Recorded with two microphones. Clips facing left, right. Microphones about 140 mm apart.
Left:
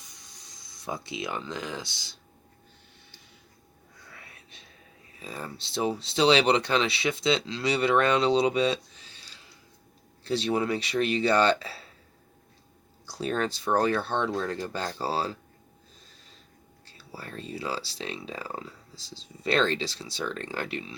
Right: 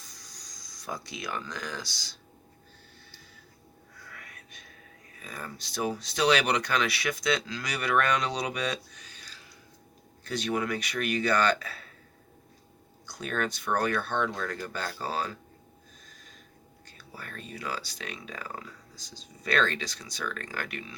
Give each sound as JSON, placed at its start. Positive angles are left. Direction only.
{"t": 0.0, "sound": "a sound", "side_deg": 20}
{"t": 4.1, "sound": "whispering", "side_deg": 30}
{"t": 5.2, "sound": "speech", "side_deg": 30}
{"t": 13.1, "sound": "speech", "side_deg": 30}
{"t": 16.0, "sound": "snort", "side_deg": 30}
{"t": 16.8, "sound": "speech", "side_deg": 30}